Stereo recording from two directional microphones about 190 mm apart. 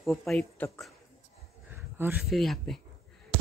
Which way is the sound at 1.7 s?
10° right (ahead or behind).